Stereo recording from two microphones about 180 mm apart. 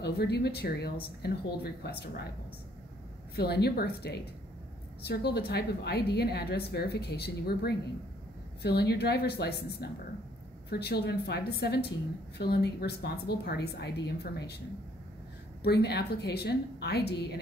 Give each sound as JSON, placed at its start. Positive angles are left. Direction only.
{"t": 0.0, "sound": "a woman's voice", "side_deg": 65}
{"t": 3.3, "sound": "a woman's voice", "side_deg": 65}
{"t": 15.6, "sound": "a woman's voice", "side_deg": 65}